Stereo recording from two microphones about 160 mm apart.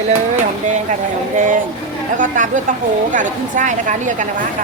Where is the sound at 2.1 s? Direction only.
55° right (ahead or behind).